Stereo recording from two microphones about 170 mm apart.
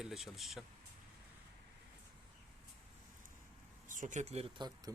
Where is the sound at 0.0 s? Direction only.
Centre (ahead or behind).